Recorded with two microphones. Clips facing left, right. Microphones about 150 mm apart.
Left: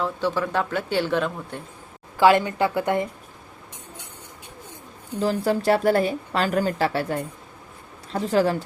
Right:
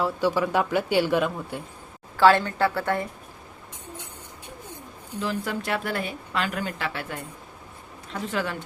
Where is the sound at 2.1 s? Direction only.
15° left (ahead or behind).